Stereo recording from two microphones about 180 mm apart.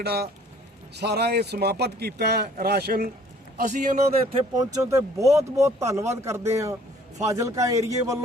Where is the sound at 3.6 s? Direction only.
45° right (ahead or behind).